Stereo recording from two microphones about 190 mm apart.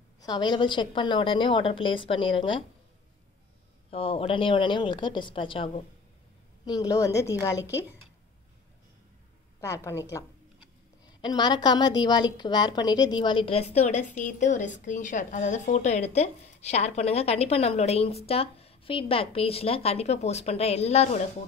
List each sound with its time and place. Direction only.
0.2 s a woman's voice: 20° left (ahead or behind)
3.9 s a woman's voice: 30° left (ahead or behind)
9.6 s a woman's voice: 15° left (ahead or behind); by 21.2 s 35° left (ahead or behind)